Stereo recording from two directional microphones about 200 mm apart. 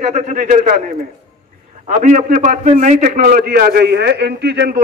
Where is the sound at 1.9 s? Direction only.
40° right (ahead or behind).